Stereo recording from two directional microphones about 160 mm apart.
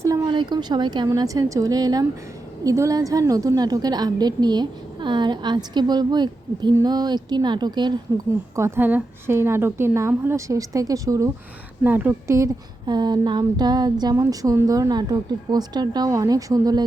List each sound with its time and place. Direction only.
0.0 s a woman's voice: 25° right (ahead or behind)
8.5 s a woman's voice: 15° right (ahead or behind)